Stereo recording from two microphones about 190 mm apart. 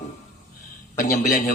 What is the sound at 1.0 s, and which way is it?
Speech, 40° left (ahead or behind).